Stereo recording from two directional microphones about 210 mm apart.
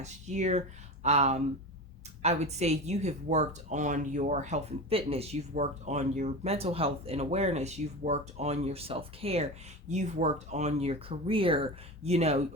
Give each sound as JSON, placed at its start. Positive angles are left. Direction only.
{"t": 0.0, "sound": "a woman's voice", "side_deg": -35}